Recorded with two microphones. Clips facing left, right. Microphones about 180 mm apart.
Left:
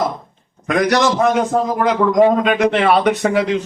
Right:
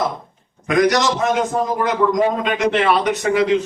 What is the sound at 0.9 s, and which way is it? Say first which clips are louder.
A man's voice: left 3 dB; 55° left (ahead or behind).